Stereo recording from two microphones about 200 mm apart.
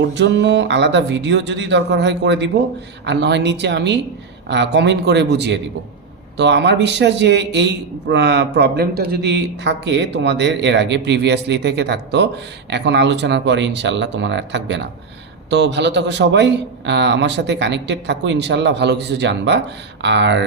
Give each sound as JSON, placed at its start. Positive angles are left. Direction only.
{"t": 0.1, "sound": "a man's voice", "side_deg": -60}